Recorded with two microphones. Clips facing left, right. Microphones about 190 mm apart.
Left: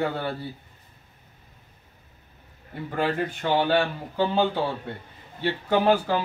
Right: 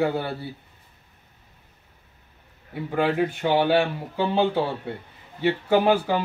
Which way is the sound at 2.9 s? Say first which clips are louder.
Right 4 dB; 10° right (ahead or behind).